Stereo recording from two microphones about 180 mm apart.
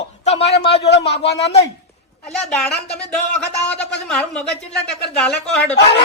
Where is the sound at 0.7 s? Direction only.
70° left (ahead or behind).